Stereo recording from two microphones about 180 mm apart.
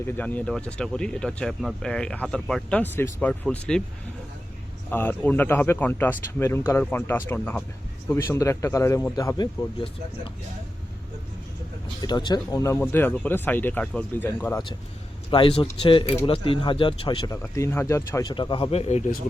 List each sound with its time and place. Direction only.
0.0 s speech: 10° left (ahead or behind)
4.9 s speech: 10° left (ahead or behind)
12.0 s speech: 25° left (ahead or behind)
15.3 s speech: 30° left (ahead or behind)
17.3 s speech: 15° left (ahead or behind); by 19.0 s 35° left (ahead or behind)